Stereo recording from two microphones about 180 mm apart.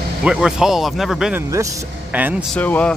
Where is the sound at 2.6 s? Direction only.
10° left (ahead or behind).